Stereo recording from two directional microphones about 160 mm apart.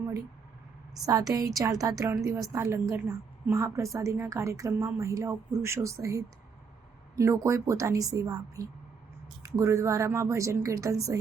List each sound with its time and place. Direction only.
1.0 s a woman's voice: 20° right (ahead or behind)